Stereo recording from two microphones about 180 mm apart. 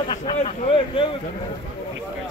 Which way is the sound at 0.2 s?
35° left (ahead or behind).